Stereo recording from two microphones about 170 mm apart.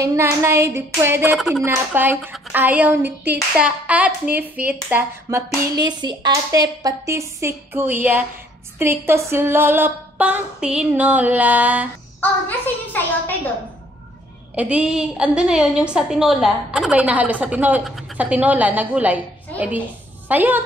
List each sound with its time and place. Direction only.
0.0 s a woman's voice: 15° right (ahead or behind)
1.3 s speech: centre (ahead or behind)
1.6 s a woman's voice: 10° right (ahead or behind)
5.8 s a woman's voice: 25° right (ahead or behind); by 11.9 s 10° right (ahead or behind)
12.2 s a woman's voice: 10° left (ahead or behind)
14.5 s a woman's voice: 10° right (ahead or behind)
20.2 s a woman's voice: 10° right (ahead or behind)